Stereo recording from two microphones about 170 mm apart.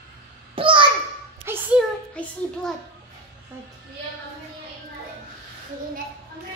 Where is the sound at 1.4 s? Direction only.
10° right (ahead or behind).